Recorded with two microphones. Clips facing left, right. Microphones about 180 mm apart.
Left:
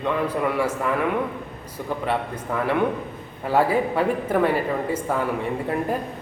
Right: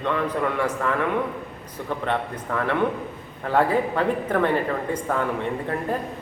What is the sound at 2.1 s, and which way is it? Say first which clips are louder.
Speech: even; 10° left (ahead or behind).